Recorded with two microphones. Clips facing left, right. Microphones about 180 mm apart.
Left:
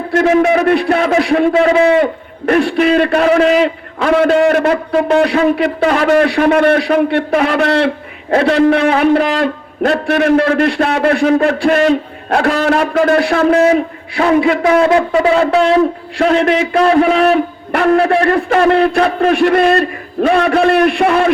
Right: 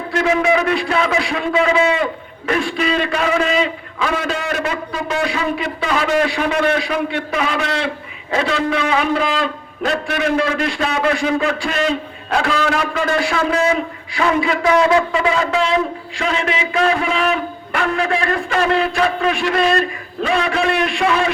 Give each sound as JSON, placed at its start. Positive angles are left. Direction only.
{"t": 0.1, "sound": "a man's voice", "side_deg": 50}